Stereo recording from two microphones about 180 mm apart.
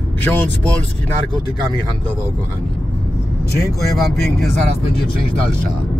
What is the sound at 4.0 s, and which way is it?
Speech, centre (ahead or behind).